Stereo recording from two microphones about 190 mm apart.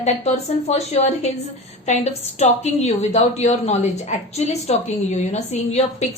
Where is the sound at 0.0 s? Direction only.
35° left (ahead or behind).